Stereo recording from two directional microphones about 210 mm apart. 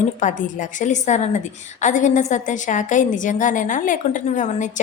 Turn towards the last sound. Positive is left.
turn(degrees=35)  # may be behind; listen again after turning